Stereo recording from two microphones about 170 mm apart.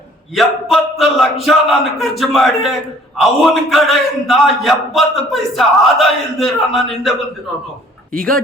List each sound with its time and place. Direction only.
0.3 s a man's voice: centre (ahead or behind)
8.1 s a man's voice: 5° left (ahead or behind)